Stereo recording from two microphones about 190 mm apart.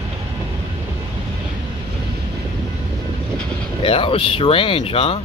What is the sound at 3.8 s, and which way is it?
Speech, 30° left (ahead or behind).